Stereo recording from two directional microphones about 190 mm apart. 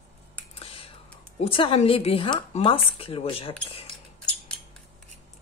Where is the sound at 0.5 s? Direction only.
30° left (ahead or behind).